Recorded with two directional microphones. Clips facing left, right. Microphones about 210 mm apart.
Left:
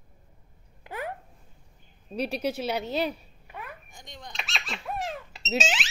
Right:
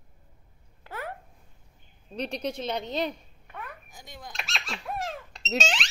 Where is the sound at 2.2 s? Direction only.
5° left (ahead or behind).